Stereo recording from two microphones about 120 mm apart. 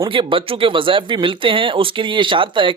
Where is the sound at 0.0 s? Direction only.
45° right (ahead or behind).